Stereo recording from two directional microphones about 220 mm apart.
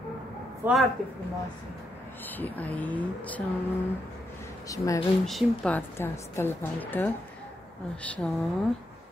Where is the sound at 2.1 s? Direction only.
10° left (ahead or behind).